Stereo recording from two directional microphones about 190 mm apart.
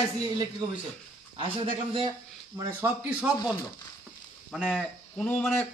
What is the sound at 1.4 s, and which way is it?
Speech, 30° right (ahead or behind).